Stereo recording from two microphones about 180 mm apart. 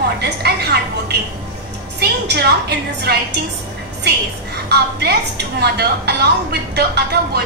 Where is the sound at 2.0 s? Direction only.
65° right (ahead or behind).